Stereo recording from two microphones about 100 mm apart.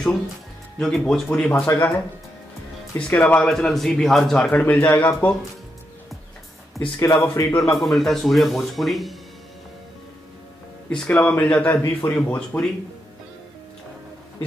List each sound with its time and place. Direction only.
0.7 s speech: 5° left (ahead or behind)
3.1 s speech: 15° left (ahead or behind)
3.4 s speech: 5° left (ahead or behind)
4.4 s speech: 15° left (ahead or behind)
7.0 s speech: 30° left (ahead or behind)
7.4 s speech: 5° left (ahead or behind)
10.9 s speech: 10° left (ahead or behind)